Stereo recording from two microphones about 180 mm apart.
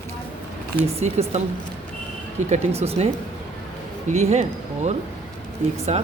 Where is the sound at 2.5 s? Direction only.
35° right (ahead or behind).